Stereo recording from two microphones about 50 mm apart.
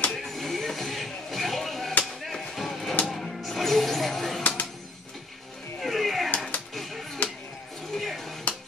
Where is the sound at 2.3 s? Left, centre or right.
Centre.